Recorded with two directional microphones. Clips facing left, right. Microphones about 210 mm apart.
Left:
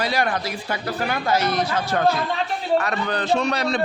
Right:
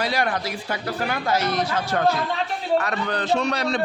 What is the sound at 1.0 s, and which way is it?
Speech, 10° left (ahead or behind).